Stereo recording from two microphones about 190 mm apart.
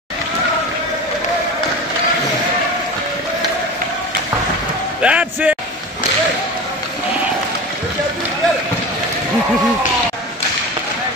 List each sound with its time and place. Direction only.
5.0 s speech: 5° right (ahead or behind)